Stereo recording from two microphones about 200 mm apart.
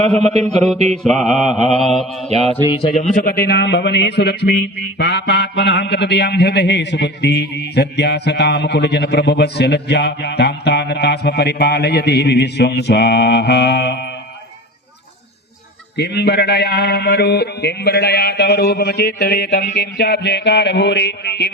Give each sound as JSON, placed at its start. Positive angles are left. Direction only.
{"t": 1.0, "sound": "mantra", "side_deg": 0}
{"t": 2.6, "sound": "a man's voice", "side_deg": 30}
{"t": 16.0, "sound": "a man's voice", "side_deg": 55}